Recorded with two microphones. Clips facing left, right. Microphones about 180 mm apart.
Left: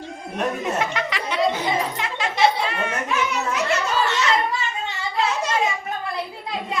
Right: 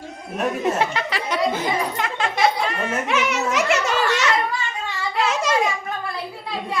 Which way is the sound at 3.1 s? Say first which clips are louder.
Right 4 dB; 80° right.